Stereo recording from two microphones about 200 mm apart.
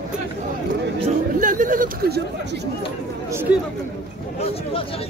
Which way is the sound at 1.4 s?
40° right (ahead or behind).